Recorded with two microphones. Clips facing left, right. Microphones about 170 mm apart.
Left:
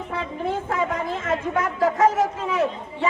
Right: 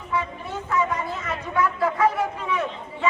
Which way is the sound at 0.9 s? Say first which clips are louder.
Left 5 dB; 50° left (ahead or behind).